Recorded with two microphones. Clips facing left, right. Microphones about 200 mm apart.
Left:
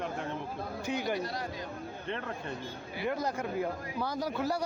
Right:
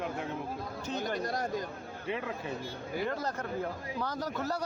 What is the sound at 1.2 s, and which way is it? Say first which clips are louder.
Speech: right 4 dB; 45° right (ahead or behind).